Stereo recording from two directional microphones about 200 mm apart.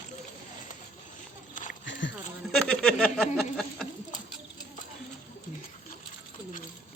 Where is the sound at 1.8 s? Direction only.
65° left (ahead or behind).